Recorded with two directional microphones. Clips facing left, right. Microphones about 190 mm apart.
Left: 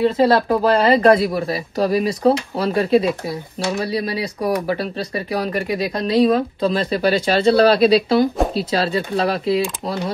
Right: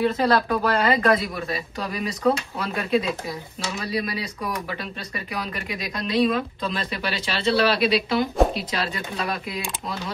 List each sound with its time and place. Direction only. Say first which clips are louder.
0.0 s speech: left 5 dB; 30° left (ahead or behind)